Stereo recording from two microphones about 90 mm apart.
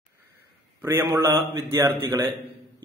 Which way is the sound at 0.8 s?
30° right (ahead or behind).